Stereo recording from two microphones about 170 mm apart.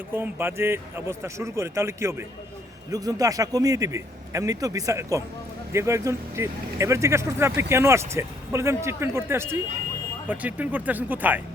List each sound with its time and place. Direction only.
0.1 s a man's voice: 15° right (ahead or behind)